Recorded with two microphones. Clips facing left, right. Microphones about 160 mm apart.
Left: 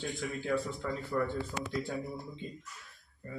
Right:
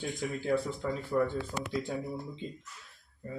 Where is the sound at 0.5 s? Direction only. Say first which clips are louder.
Right 3 dB; 15° right (ahead or behind).